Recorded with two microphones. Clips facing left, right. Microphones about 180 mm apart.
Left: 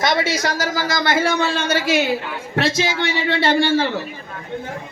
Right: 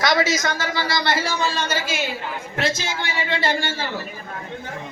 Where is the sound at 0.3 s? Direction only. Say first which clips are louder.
Left 3 dB; 35° left (ahead or behind); by 3.8 s 70° left (ahead or behind).